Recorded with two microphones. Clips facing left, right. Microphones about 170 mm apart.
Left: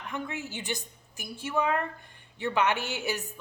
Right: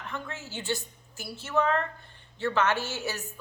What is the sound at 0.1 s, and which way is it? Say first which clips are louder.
A woman's voice: left 4 dB; 15° left (ahead or behind).